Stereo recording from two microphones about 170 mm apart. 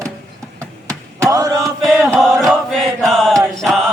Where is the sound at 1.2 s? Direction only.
20° right (ahead or behind).